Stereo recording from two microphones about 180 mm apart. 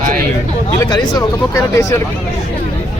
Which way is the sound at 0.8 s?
20° left (ahead or behind).